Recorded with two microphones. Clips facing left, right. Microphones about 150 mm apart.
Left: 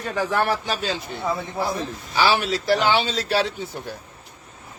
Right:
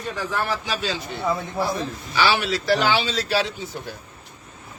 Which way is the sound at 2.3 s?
45° left (ahead or behind).